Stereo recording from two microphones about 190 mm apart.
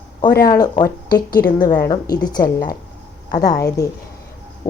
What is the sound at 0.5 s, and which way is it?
A woman's voice, 20° left (ahead or behind).